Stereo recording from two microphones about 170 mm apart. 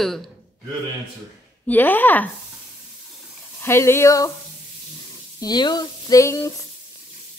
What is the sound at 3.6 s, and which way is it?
Sizzle, 15° left (ahead or behind).